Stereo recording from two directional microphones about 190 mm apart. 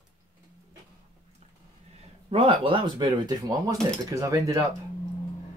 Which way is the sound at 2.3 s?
30° right (ahead or behind).